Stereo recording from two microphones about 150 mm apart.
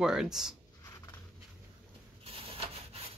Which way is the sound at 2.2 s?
40° right (ahead or behind).